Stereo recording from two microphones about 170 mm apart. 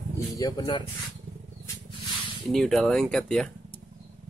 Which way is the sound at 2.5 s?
Centre (ahead or behind).